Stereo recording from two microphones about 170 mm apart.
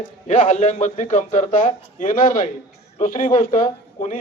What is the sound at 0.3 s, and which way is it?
A man's voice, 45° left (ahead or behind).